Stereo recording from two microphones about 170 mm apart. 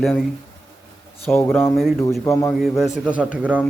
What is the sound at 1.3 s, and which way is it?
Speech, 15° left (ahead or behind).